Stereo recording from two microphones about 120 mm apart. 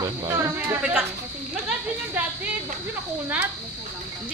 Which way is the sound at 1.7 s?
10° right (ahead or behind).